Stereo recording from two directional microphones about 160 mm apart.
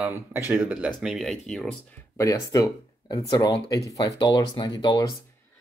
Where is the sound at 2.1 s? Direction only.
20° left (ahead or behind).